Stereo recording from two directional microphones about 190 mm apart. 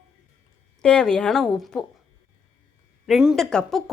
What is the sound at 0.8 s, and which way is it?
A woman's voice, 5° left (ahead or behind).